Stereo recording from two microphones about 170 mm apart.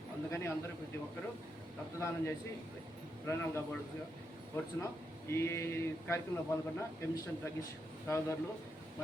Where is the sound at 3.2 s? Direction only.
15° left (ahead or behind).